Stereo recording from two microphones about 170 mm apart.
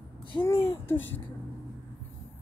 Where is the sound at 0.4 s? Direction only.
15° left (ahead or behind).